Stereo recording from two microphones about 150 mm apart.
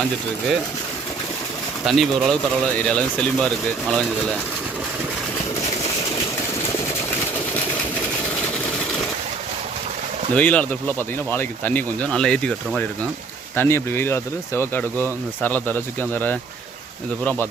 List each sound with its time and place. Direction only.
1.8 s speech: centre (ahead or behind)
10.3 s speech: 10° left (ahead or behind)
13.6 s speech: 15° left (ahead or behind)